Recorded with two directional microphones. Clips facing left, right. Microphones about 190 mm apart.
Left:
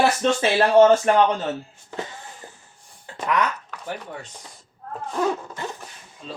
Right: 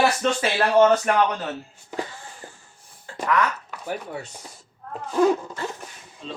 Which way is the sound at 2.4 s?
20° left (ahead or behind).